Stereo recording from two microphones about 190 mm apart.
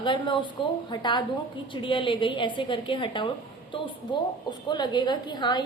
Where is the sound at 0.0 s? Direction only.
25° left (ahead or behind).